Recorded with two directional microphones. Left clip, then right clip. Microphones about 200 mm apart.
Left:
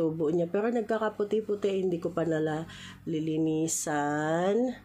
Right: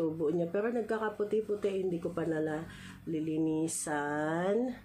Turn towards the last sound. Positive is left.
turn(degrees=40)  # may be behind; listen again after turning